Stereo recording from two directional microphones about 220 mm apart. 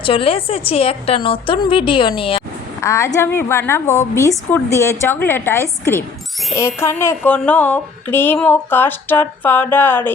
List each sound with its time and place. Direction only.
0.0 s a woman's voice: 25° left (ahead or behind)
2.8 s speech: 15° left (ahead or behind)